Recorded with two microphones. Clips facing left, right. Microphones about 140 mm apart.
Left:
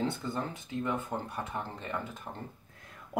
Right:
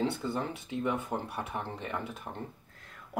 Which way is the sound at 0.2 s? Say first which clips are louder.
Right 2 dB; 15° right (ahead or behind).